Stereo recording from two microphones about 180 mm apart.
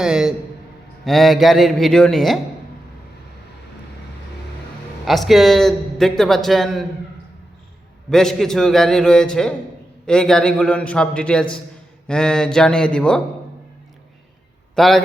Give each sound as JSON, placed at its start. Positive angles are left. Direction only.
{"t": 0.0, "sound": "speech", "side_deg": -5}
{"t": 5.0, "sound": "speech", "side_deg": 0}
{"t": 8.1, "sound": "speech", "side_deg": 0}
{"t": 14.8, "sound": "speech", "side_deg": 0}